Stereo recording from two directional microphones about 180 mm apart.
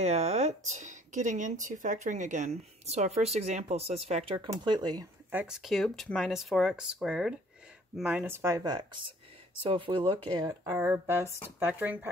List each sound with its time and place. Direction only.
0.0 s speech: 35° right (ahead or behind)
5.3 s speech: 5° right (ahead or behind)